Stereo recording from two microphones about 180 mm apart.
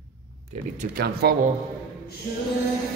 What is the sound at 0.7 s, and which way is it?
Speech, 55° right (ahead or behind).